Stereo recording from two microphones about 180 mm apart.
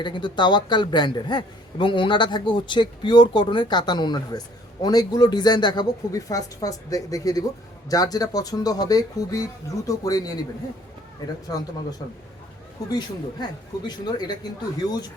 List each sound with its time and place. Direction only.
0.0 s a man's voice: 25° left (ahead or behind)
11.4 s a man's voice: 20° left (ahead or behind)
13.4 s a man's voice: 25° left (ahead or behind)